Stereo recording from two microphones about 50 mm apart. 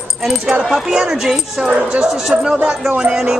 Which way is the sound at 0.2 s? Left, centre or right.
Centre.